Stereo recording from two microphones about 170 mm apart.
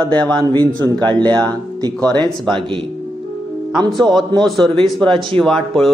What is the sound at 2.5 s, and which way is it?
Speech, 30° right (ahead or behind).